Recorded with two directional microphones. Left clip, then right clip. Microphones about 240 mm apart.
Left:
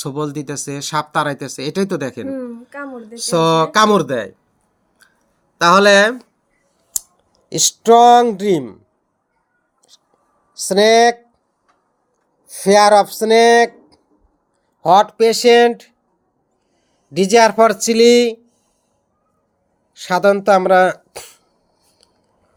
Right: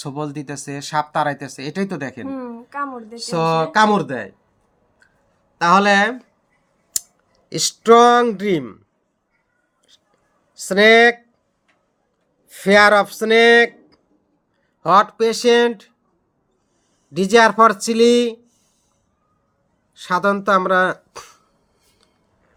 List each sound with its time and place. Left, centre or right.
0.0 s speech: centre
2.2 s a sound: centre
3.2 s speech: centre
5.5 s speech: centre
10.7 s speech: centre
12.5 s speech: centre
17.2 s speech: centre
19.9 s speech: centre